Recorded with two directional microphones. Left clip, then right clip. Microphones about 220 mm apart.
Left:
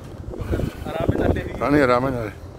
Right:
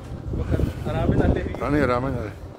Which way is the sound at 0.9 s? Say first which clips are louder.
Left 1 dB; 50° left (ahead or behind).